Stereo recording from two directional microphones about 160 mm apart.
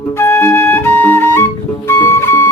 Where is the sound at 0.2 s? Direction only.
15° left (ahead or behind).